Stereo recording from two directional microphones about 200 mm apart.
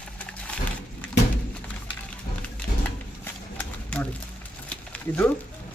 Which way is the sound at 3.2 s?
10° left (ahead or behind).